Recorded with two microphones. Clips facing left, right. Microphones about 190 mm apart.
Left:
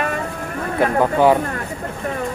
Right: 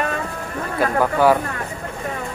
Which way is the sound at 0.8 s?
20° left (ahead or behind).